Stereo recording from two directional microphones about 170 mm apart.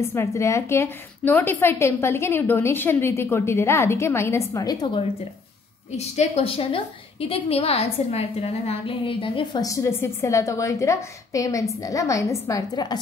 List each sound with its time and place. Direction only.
0.1 s a woman's voice: 15° left (ahead or behind)
5.9 s a woman's voice: 40° left (ahead or behind); by 13.0 s 25° left (ahead or behind)